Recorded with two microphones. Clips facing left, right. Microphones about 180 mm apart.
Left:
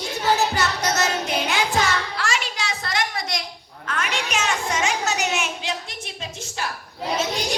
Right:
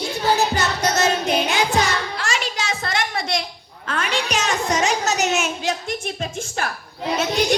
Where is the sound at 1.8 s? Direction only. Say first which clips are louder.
Right 1 dB; 20° right (ahead or behind).